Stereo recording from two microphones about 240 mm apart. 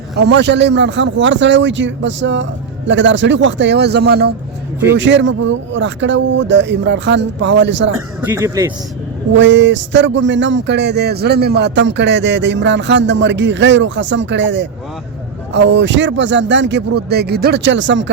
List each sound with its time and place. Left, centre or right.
0.2 s speech: right
8.2 s a man's voice: centre
9.4 s speech: right